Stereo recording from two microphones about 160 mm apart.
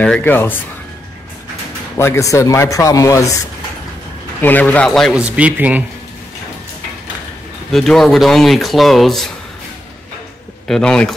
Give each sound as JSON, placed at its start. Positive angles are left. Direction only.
{"t": 0.0, "sound": "speech", "side_deg": 10}
{"t": 2.0, "sound": "speech", "side_deg": 20}
{"t": 4.4, "sound": "speech", "side_deg": 10}
{"t": 7.7, "sound": "speech", "side_deg": 0}
{"t": 10.7, "sound": "speech", "side_deg": 5}